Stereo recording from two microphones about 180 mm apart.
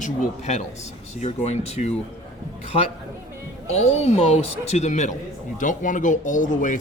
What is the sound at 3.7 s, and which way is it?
A man's voice, 35° left (ahead or behind).